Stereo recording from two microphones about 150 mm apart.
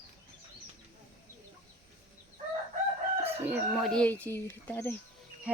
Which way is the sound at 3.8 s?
5° left (ahead or behind).